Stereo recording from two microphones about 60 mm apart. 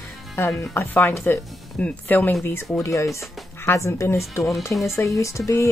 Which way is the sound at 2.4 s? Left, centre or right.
Left.